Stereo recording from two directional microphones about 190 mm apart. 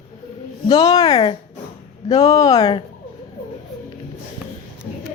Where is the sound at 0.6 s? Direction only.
20° left (ahead or behind).